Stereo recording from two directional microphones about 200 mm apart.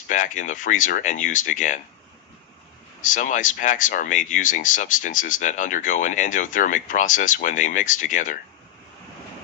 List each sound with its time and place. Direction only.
0.1 s speech: 40° left (ahead or behind)
3.0 s speech: 40° left (ahead or behind)